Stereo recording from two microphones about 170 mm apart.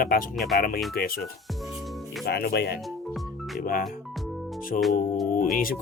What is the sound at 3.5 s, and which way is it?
Speech, 60° left (ahead or behind).